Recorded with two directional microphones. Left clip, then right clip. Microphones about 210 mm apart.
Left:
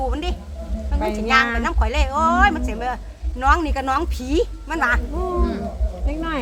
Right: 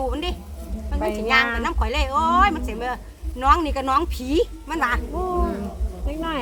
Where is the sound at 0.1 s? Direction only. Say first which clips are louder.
Even; 5° left (ahead or behind).